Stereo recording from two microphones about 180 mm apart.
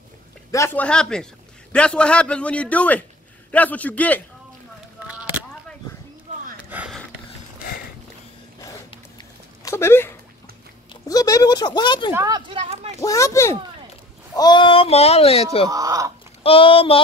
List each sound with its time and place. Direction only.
0.5 s speech: 15° left (ahead or behind)
0.8 s a man's voice: 5° left (ahead or behind)
6.7 s a sound: 10° right (ahead or behind)
9.7 s a sound: 15° left (ahead or behind)
12.1 s speech: 15° right (ahead or behind)
12.4 s a sound: 30° right (ahead or behind)
13.0 s a man's voice: 15° left (ahead or behind); by 15.4 s 35° left (ahead or behind)
15.7 s speech: 20° right (ahead or behind)
16.4 s speech: 30° left (ahead or behind)